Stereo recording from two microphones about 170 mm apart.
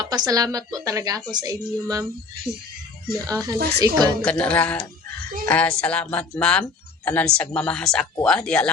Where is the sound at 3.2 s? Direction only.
20° right (ahead or behind).